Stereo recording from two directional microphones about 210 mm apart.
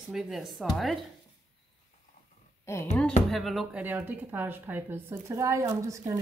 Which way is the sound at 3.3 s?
Centre (ahead or behind).